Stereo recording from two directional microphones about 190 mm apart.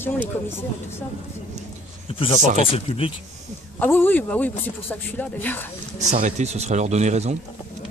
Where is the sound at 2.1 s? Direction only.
30° left (ahead or behind).